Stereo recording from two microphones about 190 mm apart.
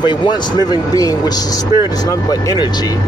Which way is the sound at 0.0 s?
25° left (ahead or behind).